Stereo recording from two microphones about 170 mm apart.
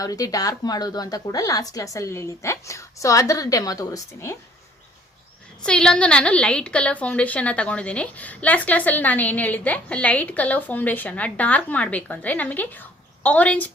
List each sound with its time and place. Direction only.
0.0 s speech: 20° left (ahead or behind)
5.6 s a woman's voice: 5° left (ahead or behind)